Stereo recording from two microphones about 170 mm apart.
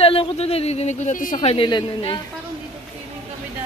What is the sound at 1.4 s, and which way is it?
Speech, 30° left (ahead or behind).